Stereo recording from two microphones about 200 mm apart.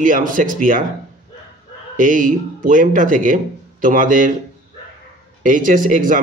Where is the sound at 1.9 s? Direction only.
40° right (ahead or behind).